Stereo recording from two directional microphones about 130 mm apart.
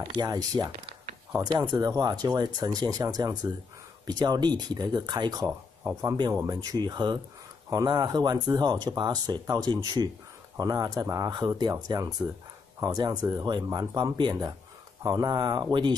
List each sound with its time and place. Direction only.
0.1 s speech: 30° right (ahead or behind)
1.8 s speech: 30° right (ahead or behind)